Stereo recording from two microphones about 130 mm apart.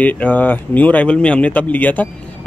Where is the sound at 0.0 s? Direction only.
15° left (ahead or behind).